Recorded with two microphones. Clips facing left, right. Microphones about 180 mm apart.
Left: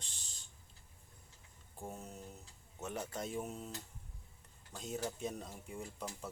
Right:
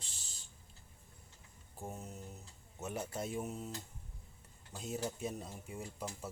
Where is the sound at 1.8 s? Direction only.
5° right (ahead or behind).